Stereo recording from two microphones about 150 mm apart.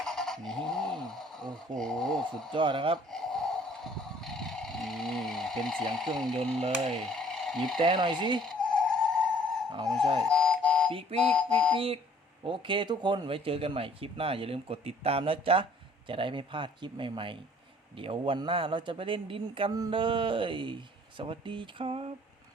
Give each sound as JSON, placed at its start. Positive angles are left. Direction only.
{"t": 0.0, "sound": "a sound", "side_deg": 5}
{"t": 1.5, "sound": "speech", "side_deg": 5}
{"t": 2.5, "sound": "speech", "side_deg": -35}
{"t": 3.1, "sound": "vehicle", "side_deg": 5}
{"t": 5.9, "sound": "speech", "side_deg": 0}
{"t": 6.6, "sound": "speech", "side_deg": -45}
{"t": 7.0, "sound": "a sound", "side_deg": 5}
{"t": 7.8, "sound": "speech", "side_deg": -35}
{"t": 8.4, "sound": "bleat", "side_deg": 5}
{"t": 10.0, "sound": "speech", "side_deg": -30}
{"t": 10.2, "sound": "buzzer", "side_deg": 5}
{"t": 11.2, "sound": "a sound", "side_deg": 5}
{"t": 12.5, "sound": "speech", "side_deg": -35}